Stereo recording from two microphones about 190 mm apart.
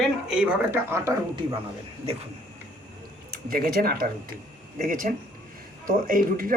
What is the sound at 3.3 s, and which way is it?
Speech, 50° right (ahead or behind).